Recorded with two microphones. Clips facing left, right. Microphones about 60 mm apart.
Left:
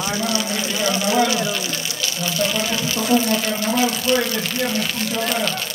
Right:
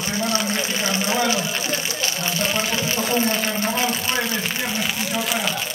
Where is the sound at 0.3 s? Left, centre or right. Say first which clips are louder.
Even; right.